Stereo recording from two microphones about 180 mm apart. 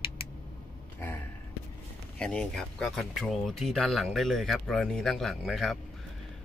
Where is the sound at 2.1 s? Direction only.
5° left (ahead or behind).